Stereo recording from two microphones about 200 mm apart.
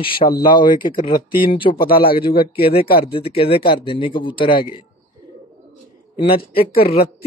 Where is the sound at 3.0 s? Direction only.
30° left (ahead or behind).